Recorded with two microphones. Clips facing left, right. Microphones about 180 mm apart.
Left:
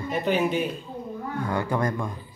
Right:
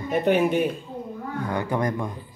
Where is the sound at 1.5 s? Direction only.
15° right (ahead or behind).